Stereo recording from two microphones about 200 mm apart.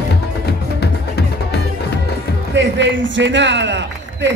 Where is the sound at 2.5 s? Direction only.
65° right (ahead or behind).